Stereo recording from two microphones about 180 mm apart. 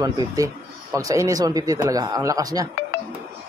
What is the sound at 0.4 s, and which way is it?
Speech, 20° right (ahead or behind).